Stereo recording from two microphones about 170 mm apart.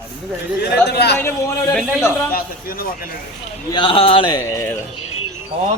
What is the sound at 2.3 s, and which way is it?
Speech, 60° left (ahead or behind).